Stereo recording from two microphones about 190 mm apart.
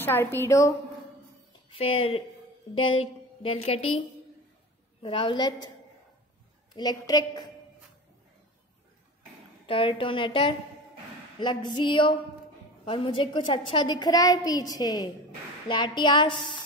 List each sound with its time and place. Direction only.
0.0 s a woman's voice: 10° left (ahead or behind)
1.7 s a woman's voice: 30° left (ahead or behind)
5.0 s a woman's voice: 25° left (ahead or behind)
6.7 s a woman's voice: 20° left (ahead or behind)
9.7 s a woman's voice: 30° left (ahead or behind)